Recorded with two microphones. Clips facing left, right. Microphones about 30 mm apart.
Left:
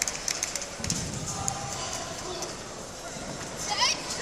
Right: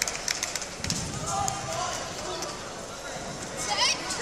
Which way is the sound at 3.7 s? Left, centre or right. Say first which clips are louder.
Right 1 dB; centre.